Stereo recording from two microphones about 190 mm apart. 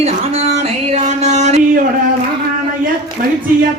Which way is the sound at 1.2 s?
40° right (ahead or behind).